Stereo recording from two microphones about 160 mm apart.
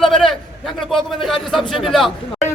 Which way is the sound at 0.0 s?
Centre (ahead or behind).